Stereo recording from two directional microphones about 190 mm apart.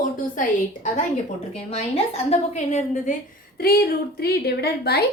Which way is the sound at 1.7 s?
35° left (ahead or behind).